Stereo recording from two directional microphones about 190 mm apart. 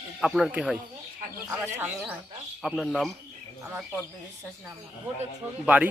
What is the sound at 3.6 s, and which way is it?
Speech, 10° right (ahead or behind).